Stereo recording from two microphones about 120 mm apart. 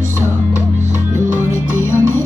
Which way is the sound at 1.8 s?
20° left (ahead or behind).